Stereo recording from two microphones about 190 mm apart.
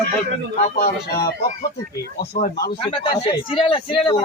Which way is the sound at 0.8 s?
55° left (ahead or behind).